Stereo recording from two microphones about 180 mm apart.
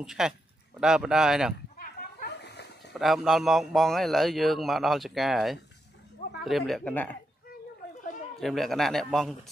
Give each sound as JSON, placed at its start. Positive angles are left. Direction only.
{"t": 0.0, "sound": "a man's voice", "side_deg": -5}
{"t": 1.8, "sound": "a sound", "side_deg": 55}
{"t": 2.9, "sound": "a man's voice", "side_deg": 0}
{"t": 8.4, "sound": "a man's voice", "side_deg": 0}